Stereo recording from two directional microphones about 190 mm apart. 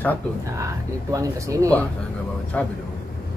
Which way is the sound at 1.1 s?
15° right (ahead or behind).